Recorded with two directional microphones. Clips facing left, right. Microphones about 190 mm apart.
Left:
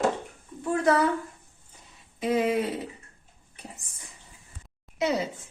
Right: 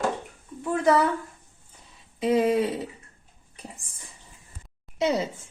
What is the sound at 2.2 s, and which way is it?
Speech, 30° right (ahead or behind).